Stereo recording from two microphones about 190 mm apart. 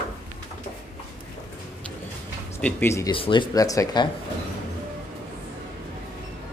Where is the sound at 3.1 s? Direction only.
25° left (ahead or behind).